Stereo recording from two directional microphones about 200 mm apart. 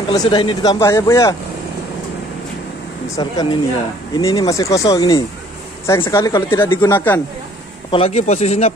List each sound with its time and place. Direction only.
0.1 s speech: 25° left (ahead or behind)
3.2 s speech: 20° left (ahead or behind)
7.9 s speech: 30° left (ahead or behind)